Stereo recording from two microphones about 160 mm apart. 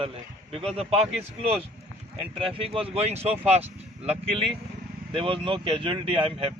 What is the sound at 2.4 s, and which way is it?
Speech, 35° right (ahead or behind).